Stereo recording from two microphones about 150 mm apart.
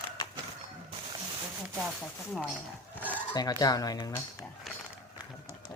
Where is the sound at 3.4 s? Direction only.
25° left (ahead or behind).